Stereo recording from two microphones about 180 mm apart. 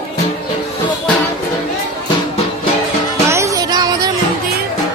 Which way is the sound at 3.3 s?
15° right (ahead or behind).